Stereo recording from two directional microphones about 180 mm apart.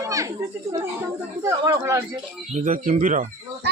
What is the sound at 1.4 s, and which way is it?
Speech, 20° right (ahead or behind).